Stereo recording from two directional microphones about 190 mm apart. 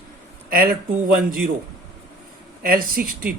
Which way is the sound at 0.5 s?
50° right (ahead or behind).